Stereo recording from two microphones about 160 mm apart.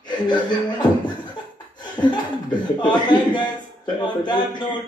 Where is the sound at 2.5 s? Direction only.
30° left (ahead or behind).